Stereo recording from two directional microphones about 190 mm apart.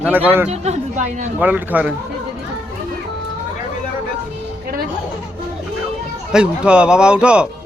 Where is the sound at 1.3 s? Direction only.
10° right (ahead or behind).